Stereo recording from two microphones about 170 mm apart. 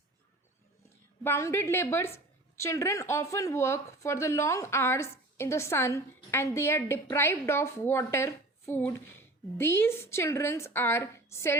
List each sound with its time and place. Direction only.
1.2 s a woman's voice: 15° left (ahead or behind)